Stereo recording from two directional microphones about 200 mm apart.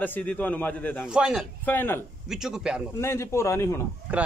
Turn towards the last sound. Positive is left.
turn(degrees=-5)  # may be behind; listen again after turning